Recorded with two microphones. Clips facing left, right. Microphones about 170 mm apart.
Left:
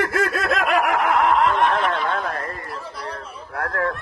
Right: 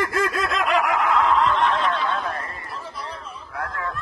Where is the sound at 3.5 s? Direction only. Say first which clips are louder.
Left 6 dB; 65° left (ahead or behind).